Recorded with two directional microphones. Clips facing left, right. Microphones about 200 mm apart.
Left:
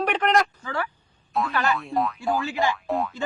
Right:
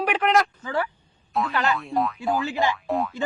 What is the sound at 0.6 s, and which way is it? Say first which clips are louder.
Speech: right 3 dB; 15° right (ahead or behind).